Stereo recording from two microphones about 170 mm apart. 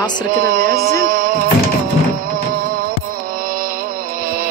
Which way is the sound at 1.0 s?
55° right (ahead or behind).